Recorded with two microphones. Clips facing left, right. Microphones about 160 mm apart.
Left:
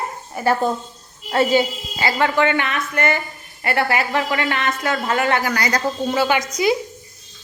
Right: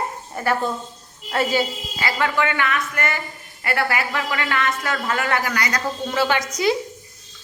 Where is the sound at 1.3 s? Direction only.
25° left (ahead or behind).